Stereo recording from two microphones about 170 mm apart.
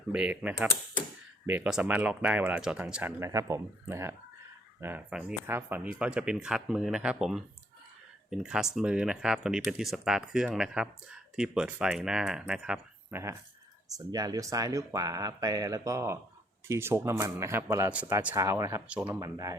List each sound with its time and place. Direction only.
0.1 s a man's voice: 10° right (ahead or behind)
18.9 s speech: 5° right (ahead or behind)
19.2 s speech: 20° right (ahead or behind)